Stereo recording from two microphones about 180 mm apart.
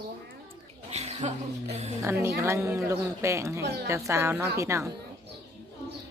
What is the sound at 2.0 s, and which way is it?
A woman's voice, 15° right (ahead or behind).